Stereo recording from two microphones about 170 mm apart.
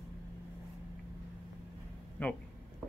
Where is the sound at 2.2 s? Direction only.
10° left (ahead or behind).